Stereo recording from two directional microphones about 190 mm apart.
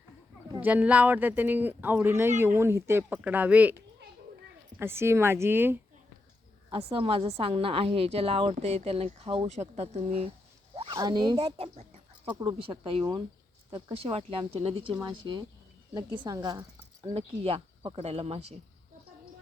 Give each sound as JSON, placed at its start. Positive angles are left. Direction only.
{"t": 0.6, "sound": "speech", "side_deg": -10}
{"t": 4.8, "sound": "speech", "side_deg": -10}
{"t": 6.7, "sound": "a woman's voice", "side_deg": -30}
{"t": 10.9, "sound": "speech", "side_deg": -20}
{"t": 12.2, "sound": "speech", "side_deg": -10}
{"t": 12.5, "sound": "a woman's voice", "side_deg": -25}
{"t": 17.2, "sound": "a woman's voice", "side_deg": -30}